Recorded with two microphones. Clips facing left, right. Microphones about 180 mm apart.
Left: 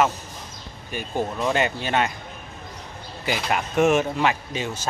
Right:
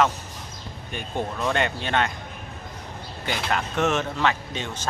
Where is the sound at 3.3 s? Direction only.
10° left (ahead or behind).